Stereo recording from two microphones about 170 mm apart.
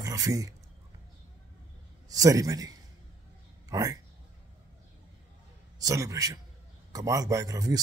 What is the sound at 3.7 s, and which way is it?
Speech, 20° right (ahead or behind).